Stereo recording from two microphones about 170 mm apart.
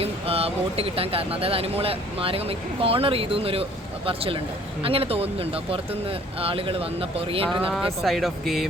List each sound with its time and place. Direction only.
0.0 s speech: 35° right (ahead or behind)
8.0 s speech: centre (ahead or behind)